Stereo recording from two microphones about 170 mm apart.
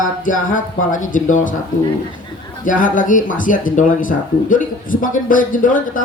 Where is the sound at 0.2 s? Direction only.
50° left (ahead or behind).